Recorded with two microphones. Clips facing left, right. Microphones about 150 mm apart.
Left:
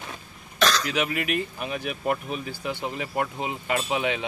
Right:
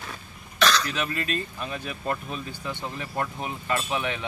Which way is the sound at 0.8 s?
15° left (ahead or behind).